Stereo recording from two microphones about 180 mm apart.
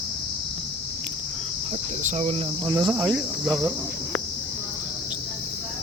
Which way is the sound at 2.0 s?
40° right (ahead or behind).